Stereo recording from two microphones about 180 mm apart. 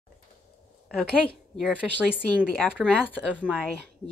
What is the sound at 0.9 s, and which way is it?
A woman's voice, 5° left (ahead or behind).